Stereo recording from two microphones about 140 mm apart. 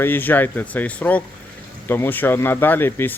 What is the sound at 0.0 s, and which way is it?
Speech, 15° left (ahead or behind).